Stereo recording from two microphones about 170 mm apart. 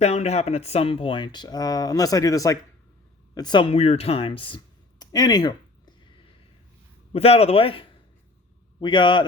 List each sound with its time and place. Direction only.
0.0 s speech: 40° left (ahead or behind); by 2.6 s 20° left (ahead or behind)
3.3 s a sound: 25° left (ahead or behind)
7.1 s a man's voice: 35° left (ahead or behind)